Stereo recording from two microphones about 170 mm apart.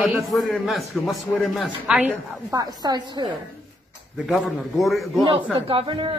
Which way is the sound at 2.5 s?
20° right (ahead or behind).